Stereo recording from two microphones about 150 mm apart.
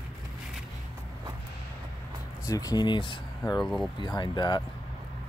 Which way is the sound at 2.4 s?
25° left (ahead or behind).